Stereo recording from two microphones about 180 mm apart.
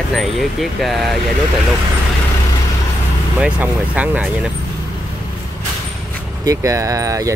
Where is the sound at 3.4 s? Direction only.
10° right (ahead or behind).